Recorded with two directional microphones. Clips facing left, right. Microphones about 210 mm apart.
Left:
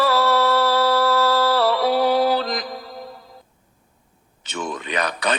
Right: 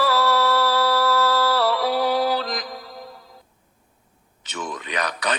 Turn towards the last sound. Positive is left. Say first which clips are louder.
# left 3 dB
turn(degrees=25)  # may be behind; listen again after turning